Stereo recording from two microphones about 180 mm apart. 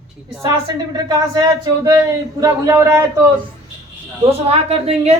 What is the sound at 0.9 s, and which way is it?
A man's voice, 20° right (ahead or behind).